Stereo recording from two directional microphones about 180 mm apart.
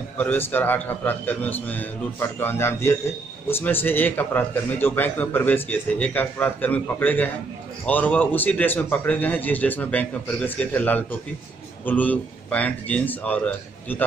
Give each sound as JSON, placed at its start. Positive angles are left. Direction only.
{"t": 0.2, "sound": "a man's voice", "side_deg": 10}